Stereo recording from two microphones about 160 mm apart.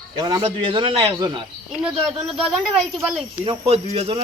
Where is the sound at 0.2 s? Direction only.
25° right (ahead or behind).